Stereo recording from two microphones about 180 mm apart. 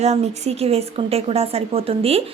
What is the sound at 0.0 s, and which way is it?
Speech, 35° right (ahead or behind).